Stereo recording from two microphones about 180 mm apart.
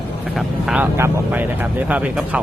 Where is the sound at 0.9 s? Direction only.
10° right (ahead or behind).